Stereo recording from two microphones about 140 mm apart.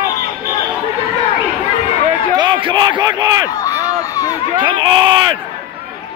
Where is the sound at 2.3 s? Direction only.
35° right (ahead or behind).